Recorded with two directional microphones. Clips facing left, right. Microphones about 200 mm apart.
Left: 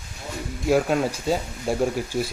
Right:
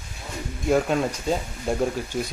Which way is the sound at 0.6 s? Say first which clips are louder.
Left 1 dB; 5° left (ahead or behind).